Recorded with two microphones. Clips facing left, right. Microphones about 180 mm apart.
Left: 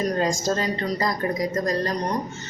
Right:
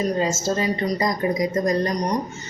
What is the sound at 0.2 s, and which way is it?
A woman's voice, 5° right (ahead or behind).